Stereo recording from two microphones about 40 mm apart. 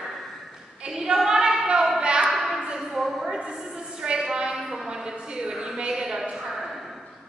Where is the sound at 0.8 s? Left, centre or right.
Centre.